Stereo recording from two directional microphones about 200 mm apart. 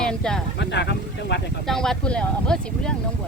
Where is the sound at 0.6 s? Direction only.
60° left (ahead or behind).